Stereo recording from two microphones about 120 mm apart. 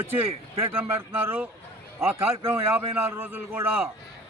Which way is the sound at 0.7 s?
15° right (ahead or behind).